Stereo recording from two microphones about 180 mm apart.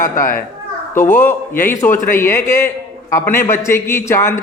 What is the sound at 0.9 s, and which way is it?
A man's voice, 10° left (ahead or behind).